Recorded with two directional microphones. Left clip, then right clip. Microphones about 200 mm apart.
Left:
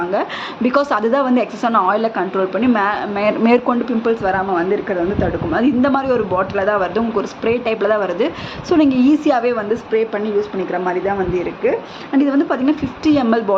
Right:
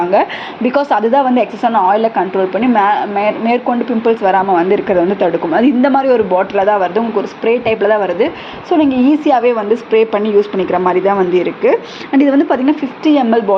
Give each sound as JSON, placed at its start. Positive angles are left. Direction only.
{"t": 0.6, "sound": "speech", "side_deg": 5}
{"t": 3.2, "sound": "speech", "side_deg": 20}
{"t": 4.0, "sound": "speech", "side_deg": -5}
{"t": 12.1, "sound": "a woman's voice", "side_deg": -10}